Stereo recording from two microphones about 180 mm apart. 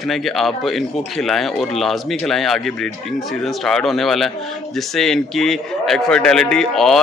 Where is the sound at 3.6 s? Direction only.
Centre (ahead or behind).